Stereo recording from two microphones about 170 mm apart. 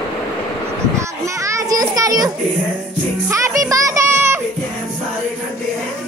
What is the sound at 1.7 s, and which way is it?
Children playing, 20° right (ahead or behind).